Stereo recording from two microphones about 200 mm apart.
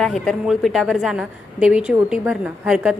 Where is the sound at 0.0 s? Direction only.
Centre (ahead or behind).